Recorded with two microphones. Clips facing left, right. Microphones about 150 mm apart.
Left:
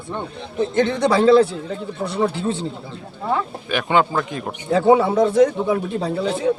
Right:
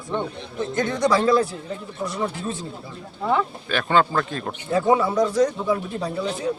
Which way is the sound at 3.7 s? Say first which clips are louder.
Left 2 dB; 15° left (ahead or behind).